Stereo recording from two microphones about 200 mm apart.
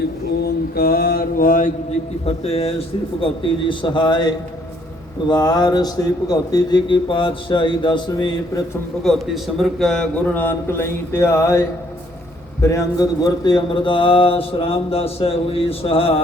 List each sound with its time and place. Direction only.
0.4 s mantra: 50° left (ahead or behind)
2.2 s speech: 30° left (ahead or behind)
9.0 s a man's voice: centre (ahead or behind)
12.6 s speech: 15° left (ahead or behind)